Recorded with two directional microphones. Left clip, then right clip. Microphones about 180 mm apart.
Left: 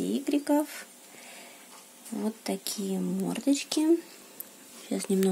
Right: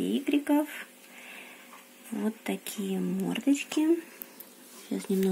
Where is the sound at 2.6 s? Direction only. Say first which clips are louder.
Left 1 dB; 15° left (ahead or behind).